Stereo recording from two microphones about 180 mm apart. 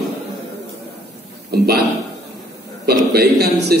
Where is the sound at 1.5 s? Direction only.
60° right (ahead or behind).